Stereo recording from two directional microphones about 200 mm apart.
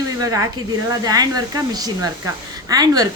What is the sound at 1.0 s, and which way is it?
A woman's voice, 20° right (ahead or behind).